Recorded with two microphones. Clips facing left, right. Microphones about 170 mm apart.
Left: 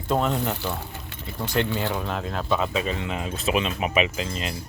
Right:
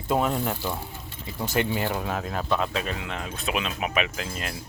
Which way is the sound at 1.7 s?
5° right (ahead or behind).